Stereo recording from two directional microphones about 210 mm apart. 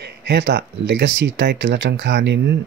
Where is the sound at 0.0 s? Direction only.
55° right (ahead or behind).